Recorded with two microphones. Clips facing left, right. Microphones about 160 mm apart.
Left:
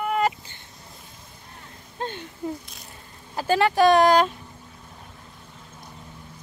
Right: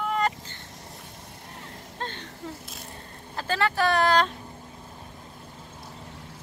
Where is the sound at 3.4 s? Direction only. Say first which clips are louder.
Left 6 dB; 15° left (ahead or behind).